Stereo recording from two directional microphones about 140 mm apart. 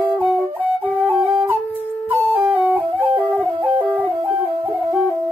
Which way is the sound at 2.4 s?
10° right (ahead or behind).